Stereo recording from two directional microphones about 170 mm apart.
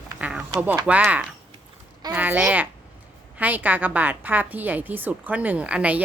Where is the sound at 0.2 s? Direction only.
5° right (ahead or behind).